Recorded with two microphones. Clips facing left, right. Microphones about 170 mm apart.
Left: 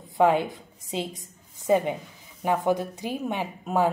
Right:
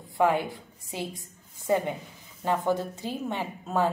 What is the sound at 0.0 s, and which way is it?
A woman's voice, 20° left (ahead or behind).